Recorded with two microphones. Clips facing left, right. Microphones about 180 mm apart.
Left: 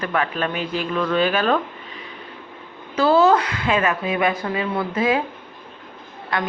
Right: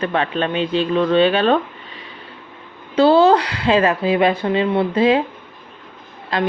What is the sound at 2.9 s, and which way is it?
Speech, 30° right (ahead or behind).